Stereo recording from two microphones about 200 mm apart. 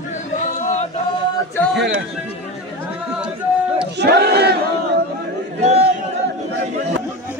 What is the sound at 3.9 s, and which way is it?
Battle cry, 60° right (ahead or behind).